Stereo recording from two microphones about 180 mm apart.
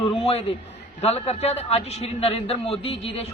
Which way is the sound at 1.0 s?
35° left (ahead or behind).